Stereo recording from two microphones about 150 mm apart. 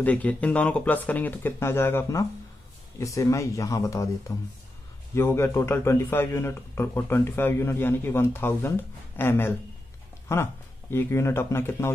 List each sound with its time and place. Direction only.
0.0 s a man's voice: 10° left (ahead or behind)